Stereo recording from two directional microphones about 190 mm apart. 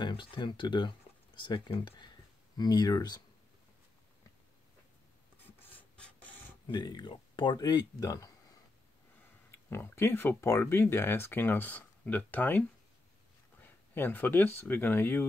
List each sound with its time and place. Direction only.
0.0 s speech: 25° left (ahead or behind)
5.6 s filing: 10° left (ahead or behind)
6.7 s speech: 25° left (ahead or behind)
9.5 s speech: 10° left (ahead or behind)